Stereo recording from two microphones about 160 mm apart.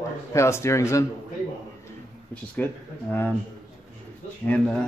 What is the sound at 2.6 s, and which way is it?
Speech, 10° left (ahead or behind).